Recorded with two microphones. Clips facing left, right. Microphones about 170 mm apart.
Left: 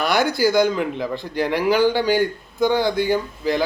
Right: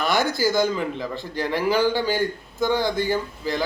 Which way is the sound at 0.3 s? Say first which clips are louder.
Left 4 dB; 15° left (ahead or behind).